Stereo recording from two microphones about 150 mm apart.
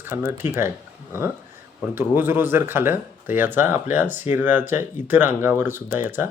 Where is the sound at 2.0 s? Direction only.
15° right (ahead or behind).